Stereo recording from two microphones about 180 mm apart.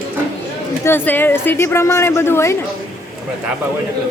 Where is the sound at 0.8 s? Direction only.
10° left (ahead or behind).